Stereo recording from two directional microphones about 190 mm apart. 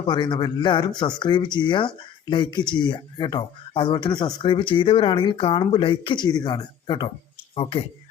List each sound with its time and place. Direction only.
0.0 s speech: 25° left (ahead or behind)